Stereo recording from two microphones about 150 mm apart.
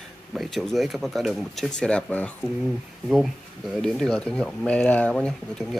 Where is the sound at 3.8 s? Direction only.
5° left (ahead or behind).